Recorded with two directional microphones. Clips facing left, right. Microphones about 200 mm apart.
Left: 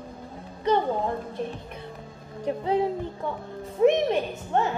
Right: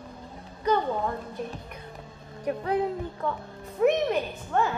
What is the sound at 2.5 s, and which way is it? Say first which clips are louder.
Speech: left 2 dB; 25° left (ahead or behind).